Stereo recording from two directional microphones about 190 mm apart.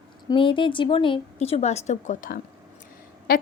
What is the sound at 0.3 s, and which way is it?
A woman's voice, 25° left (ahead or behind).